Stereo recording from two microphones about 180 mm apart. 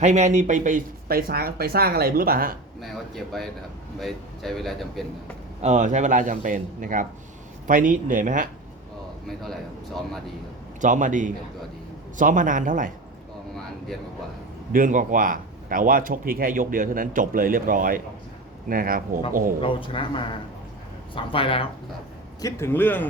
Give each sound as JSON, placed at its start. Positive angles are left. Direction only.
{"t": 0.0, "sound": "speech", "side_deg": -40}
{"t": 4.0, "sound": "speech", "side_deg": 0}
{"t": 5.6, "sound": "speech", "side_deg": -40}
{"t": 9.4, "sound": "speech", "side_deg": 0}
{"t": 10.8, "sound": "speech", "side_deg": -45}
{"t": 14.7, "sound": "speech", "side_deg": -50}
{"t": 19.6, "sound": "speech", "side_deg": 30}
{"t": 22.4, "sound": "a man's voice", "side_deg": 15}